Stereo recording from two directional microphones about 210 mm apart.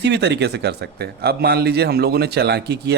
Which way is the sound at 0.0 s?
55° right (ahead or behind).